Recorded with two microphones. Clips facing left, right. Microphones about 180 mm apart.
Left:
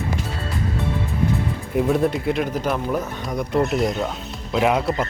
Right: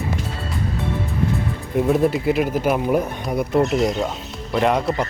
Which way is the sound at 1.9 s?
Centre (ahead or behind).